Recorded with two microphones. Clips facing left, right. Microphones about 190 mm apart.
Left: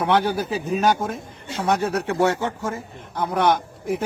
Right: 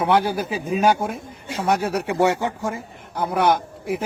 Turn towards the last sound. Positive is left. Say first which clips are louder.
# even
turn(degrees=-5)  # may be behind; listen again after turning